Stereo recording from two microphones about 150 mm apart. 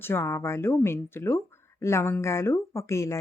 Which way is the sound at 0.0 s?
15° left (ahead or behind).